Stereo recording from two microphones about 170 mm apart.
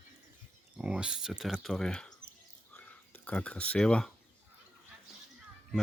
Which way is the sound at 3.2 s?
10° left (ahead or behind).